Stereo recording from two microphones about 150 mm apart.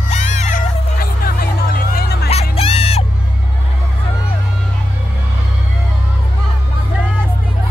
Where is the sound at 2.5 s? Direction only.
40° left (ahead or behind).